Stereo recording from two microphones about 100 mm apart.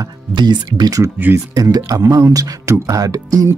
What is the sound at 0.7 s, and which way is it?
Speech, 35° right (ahead or behind).